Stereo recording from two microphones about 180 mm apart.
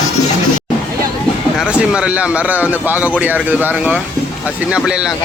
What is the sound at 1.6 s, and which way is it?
Speech, 5° right (ahead or behind).